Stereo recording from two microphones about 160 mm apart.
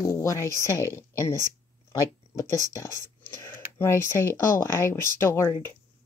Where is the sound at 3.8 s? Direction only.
15° left (ahead or behind).